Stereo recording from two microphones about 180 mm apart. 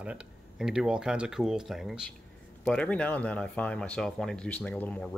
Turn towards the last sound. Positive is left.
turn(degrees=10)  # may be behind; listen again after turning